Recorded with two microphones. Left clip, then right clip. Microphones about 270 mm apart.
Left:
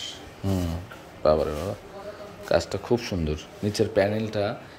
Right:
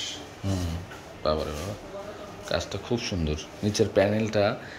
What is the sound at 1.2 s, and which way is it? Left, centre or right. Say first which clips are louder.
Speech: left 6 dB; left.